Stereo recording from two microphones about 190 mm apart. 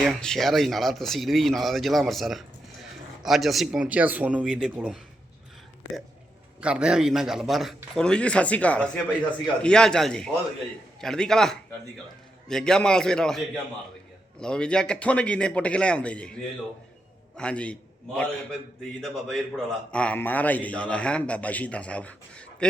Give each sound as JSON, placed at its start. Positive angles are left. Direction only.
{"t": 0.0, "sound": "speech", "side_deg": 0}
{"t": 6.6, "sound": "a man's voice", "side_deg": -5}